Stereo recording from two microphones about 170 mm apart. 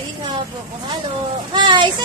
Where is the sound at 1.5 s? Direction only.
25° right (ahead or behind).